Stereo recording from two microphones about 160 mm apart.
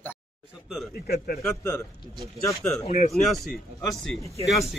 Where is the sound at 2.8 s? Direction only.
40° left (ahead or behind).